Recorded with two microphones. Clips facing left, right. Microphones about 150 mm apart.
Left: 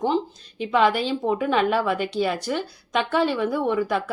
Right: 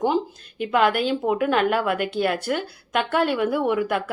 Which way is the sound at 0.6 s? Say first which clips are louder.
Even; 5° right (ahead or behind).